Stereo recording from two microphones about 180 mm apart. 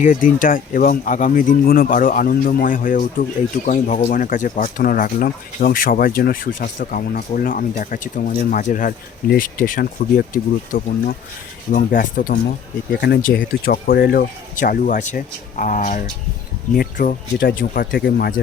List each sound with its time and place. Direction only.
0.0 s speech: 45° left (ahead or behind); by 18.4 s 75° left (ahead or behind)